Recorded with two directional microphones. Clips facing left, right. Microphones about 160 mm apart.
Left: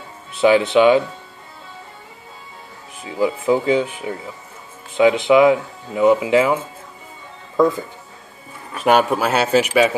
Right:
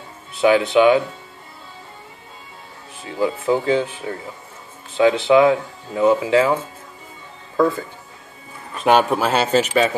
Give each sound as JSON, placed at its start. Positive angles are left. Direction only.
{"t": 0.4, "sound": "speech", "side_deg": 25}
{"t": 3.1, "sound": "speech", "side_deg": 15}
{"t": 8.7, "sound": "speech", "side_deg": 5}